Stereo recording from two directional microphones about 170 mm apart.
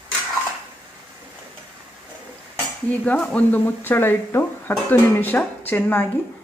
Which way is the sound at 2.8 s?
10° left (ahead or behind).